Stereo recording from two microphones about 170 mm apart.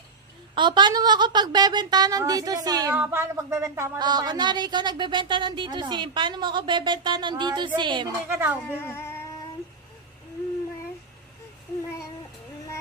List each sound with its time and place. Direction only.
0.5 s speech: 25° right (ahead or behind)
8.3 s speech: 15° right (ahead or behind)
8.7 s a sound: 15° left (ahead or behind)